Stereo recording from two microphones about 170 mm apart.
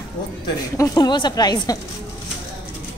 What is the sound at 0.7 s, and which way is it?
A woman's voice, 25° left (ahead or behind).